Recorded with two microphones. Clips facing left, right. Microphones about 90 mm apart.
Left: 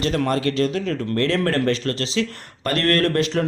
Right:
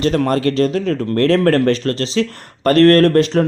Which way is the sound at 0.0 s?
40° right (ahead or behind).